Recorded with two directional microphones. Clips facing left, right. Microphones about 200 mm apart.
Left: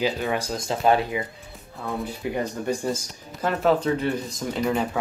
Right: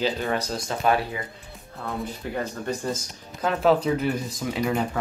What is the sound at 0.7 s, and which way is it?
Speech, 25° left (ahead or behind).